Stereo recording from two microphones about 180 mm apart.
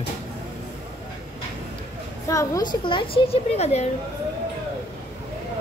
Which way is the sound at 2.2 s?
20° left (ahead or behind).